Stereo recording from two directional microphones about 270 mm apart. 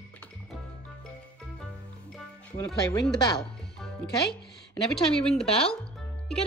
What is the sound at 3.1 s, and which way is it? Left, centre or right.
Speech, centre.